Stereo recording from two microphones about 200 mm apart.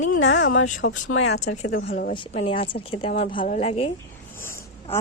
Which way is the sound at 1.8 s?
45° left (ahead or behind).